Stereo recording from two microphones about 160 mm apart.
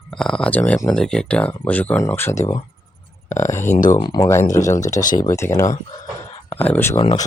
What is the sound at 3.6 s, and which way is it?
Speech, 50° left (ahead or behind).